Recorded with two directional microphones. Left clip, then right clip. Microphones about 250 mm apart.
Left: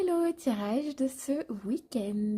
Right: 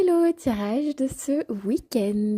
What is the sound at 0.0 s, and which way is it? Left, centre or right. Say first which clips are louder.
Speech: right 8 dB; right.